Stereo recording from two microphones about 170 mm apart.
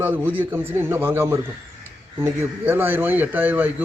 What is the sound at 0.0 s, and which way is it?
A man's voice, 10° right (ahead or behind).